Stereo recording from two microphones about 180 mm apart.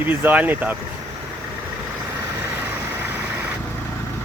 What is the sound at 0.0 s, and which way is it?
Speech, 10° right (ahead or behind).